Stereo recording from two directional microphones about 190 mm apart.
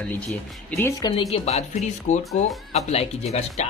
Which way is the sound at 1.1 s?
30° left (ahead or behind).